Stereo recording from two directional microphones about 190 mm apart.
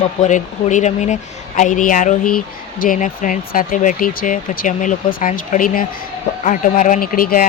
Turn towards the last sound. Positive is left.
turn(degrees=50)  # may be behind; listen again after turning